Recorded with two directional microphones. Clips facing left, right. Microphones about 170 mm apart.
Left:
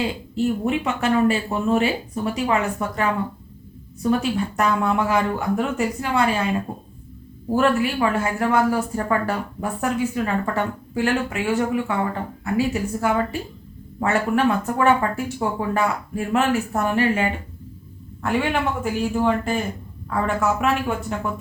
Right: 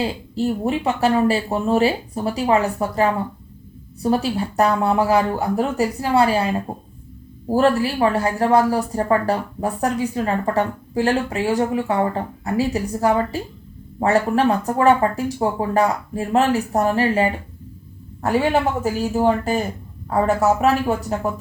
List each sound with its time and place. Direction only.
0.0 s speech: 35° right (ahead or behind)
7.5 s speech: 35° right (ahead or behind)